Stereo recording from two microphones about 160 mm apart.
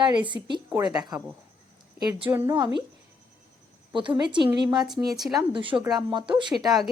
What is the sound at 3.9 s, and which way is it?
A woman's voice, 30° right (ahead or behind).